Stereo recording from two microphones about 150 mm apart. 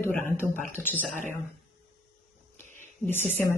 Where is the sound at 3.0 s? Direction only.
15° left (ahead or behind).